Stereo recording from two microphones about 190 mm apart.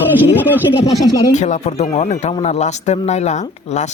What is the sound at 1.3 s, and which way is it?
A man's voice, 40° left (ahead or behind).